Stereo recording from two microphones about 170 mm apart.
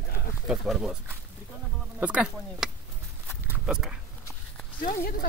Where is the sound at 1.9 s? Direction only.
5° right (ahead or behind).